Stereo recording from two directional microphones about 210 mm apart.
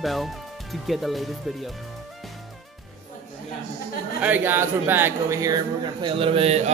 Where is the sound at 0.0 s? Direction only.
Centre (ahead or behind).